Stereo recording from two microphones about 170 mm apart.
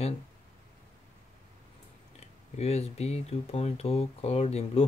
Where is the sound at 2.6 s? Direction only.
40° left (ahead or behind).